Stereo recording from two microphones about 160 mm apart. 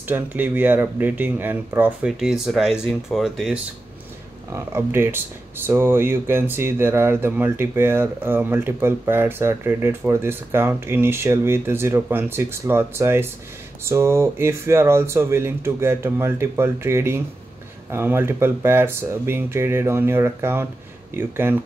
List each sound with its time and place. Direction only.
0.1 s speech: 10° right (ahead or behind)
4.5 s speech: 15° right (ahead or behind)